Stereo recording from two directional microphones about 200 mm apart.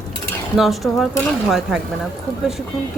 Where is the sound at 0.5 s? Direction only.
Centre (ahead or behind).